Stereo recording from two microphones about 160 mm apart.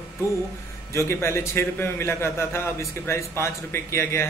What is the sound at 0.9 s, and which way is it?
A man's voice, 15° left (ahead or behind).